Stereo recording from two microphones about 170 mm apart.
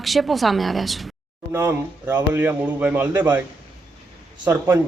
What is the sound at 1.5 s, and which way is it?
Speech, 15° right (ahead or behind).